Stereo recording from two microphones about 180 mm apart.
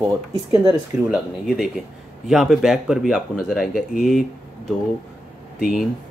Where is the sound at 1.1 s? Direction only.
Centre (ahead or behind).